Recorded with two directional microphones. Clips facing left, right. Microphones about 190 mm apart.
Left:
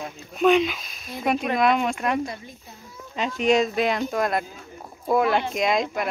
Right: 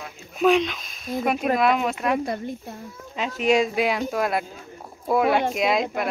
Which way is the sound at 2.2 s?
55° right (ahead or behind).